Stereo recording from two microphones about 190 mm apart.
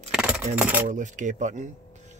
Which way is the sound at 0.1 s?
5° right (ahead or behind).